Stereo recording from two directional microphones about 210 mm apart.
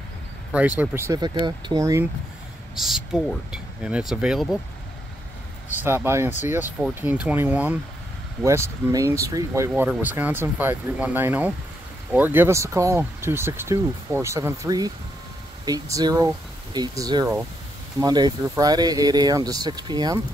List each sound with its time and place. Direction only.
0.5 s speech: 5° right (ahead or behind)
2.7 s speech: centre (ahead or behind)
5.8 s speech: 10° right (ahead or behind)